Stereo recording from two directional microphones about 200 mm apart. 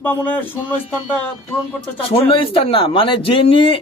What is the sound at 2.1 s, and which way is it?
Speech, 30° left (ahead or behind).